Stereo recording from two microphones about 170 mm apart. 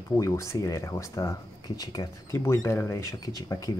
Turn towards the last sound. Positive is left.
turn(degrees=20)  # may be behind; listen again after turning